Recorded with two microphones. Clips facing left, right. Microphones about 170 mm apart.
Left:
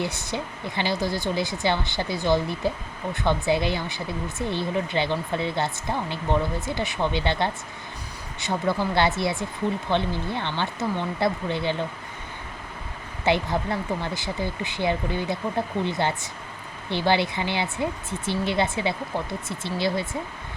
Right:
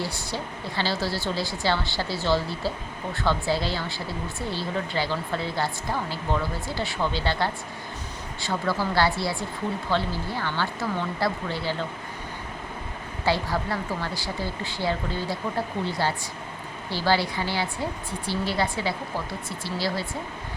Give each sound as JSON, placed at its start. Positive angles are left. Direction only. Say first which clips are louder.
{"t": 0.0, "sound": "a woman's voice", "louder": "left 2 dB", "side_deg": 20}
{"t": 13.2, "sound": "a woman's voice", "louder": "left 2 dB", "side_deg": 20}